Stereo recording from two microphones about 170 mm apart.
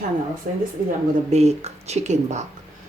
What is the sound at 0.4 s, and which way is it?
Speech, 50° right (ahead or behind).